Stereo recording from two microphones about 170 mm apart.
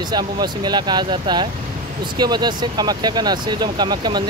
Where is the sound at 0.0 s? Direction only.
25° right (ahead or behind).